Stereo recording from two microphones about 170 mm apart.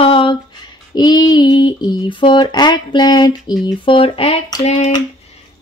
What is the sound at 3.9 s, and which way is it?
Speech, 30° left (ahead or behind).